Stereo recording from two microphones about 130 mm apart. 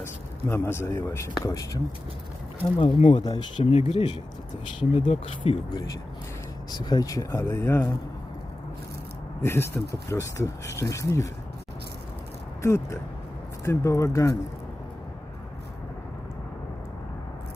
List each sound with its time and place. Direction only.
0.0 s speech: 20° left (ahead or behind)
2.8 s speech: 55° left (ahead or behind)
3.2 s speech: 35° left (ahead or behind)
3.6 s speech: 50° left (ahead or behind); by 7.9 s 20° left (ahead or behind)
9.4 s speech: 20° left (ahead or behind)
12.6 s speech: 20° left (ahead or behind)